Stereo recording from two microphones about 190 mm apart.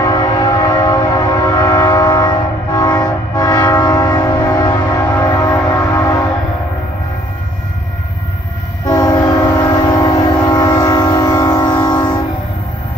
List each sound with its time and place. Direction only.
0.0 s train: 20° left (ahead or behind)
8.8 s train: 20° left (ahead or behind)